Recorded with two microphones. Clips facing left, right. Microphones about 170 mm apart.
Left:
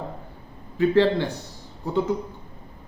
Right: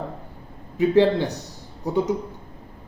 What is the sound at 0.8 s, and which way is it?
Speech, 15° right (ahead or behind).